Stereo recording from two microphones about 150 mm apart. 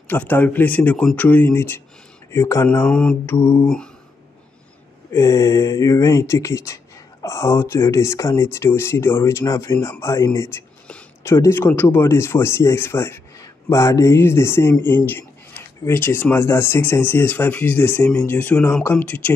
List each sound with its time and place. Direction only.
0.1 s speech: 10° left (ahead or behind)
3.6 s a sound: 5° left (ahead or behind)
5.1 s speech: 20° left (ahead or behind)